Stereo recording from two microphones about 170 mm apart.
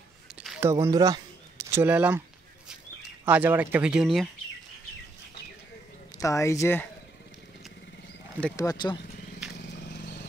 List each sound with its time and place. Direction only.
0.6 s speech: 15° right (ahead or behind)
1.7 s speech: 10° right (ahead or behind)
3.3 s speech: 10° right (ahead or behind)
6.1 s speech: 20° left (ahead or behind)
8.5 s speech: 25° left (ahead or behind)
9.8 s vehicle: 85° left